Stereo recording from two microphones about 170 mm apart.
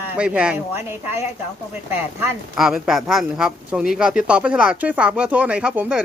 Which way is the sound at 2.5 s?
Centre (ahead or behind).